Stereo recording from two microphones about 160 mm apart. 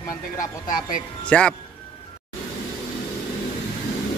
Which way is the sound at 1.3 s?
5° left (ahead or behind).